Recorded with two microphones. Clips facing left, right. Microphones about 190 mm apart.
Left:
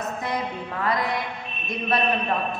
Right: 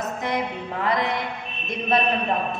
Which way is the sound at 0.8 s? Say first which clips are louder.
Right 1 dB; 20° right (ahead or behind).